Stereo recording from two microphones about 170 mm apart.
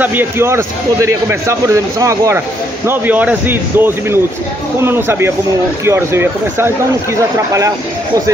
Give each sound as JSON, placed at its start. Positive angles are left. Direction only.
{"t": 0.0, "sound": "a man's voice", "side_deg": -10}